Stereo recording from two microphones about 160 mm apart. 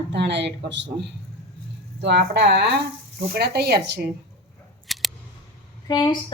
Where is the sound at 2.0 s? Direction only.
90° right.